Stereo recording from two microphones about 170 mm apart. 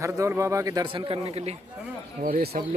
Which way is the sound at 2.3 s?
55° right (ahead or behind).